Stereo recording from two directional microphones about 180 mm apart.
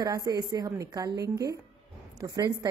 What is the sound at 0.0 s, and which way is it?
A woman's voice, 20° right (ahead or behind).